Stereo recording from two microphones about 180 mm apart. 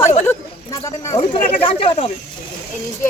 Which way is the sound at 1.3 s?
30° left (ahead or behind).